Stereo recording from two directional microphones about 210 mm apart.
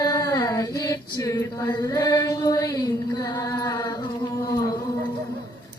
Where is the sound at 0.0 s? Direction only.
20° left (ahead or behind).